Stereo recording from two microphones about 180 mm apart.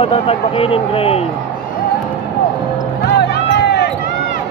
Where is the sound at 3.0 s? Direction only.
70° left (ahead or behind).